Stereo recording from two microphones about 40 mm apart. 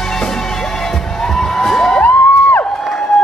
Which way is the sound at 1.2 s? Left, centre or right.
Centre.